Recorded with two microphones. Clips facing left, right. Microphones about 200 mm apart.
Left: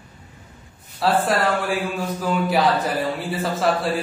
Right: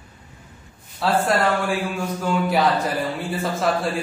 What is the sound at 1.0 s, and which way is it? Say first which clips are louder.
Speech: even; centre (ahead or behind).